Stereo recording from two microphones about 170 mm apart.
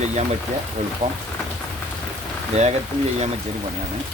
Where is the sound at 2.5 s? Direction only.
40° right (ahead or behind).